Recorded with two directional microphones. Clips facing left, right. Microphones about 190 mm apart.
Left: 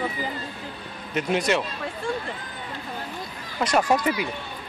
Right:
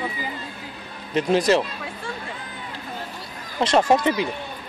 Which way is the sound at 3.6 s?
25° right (ahead or behind).